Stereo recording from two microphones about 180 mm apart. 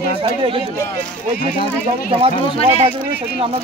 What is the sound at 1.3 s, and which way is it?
Speech, 50° left (ahead or behind).